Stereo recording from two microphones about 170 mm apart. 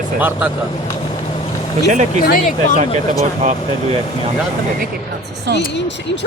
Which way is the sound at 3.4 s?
40° right (ahead or behind).